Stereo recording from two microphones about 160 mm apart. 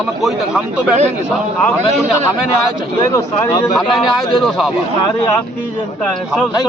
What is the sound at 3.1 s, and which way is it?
Speech, 20° left (ahead or behind).